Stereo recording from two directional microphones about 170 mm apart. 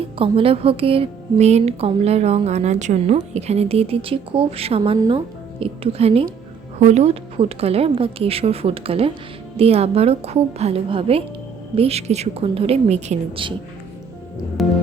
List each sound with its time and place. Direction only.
0.2 s a woman's voice: 35° right (ahead or behind)
14.6 s music: centre (ahead or behind)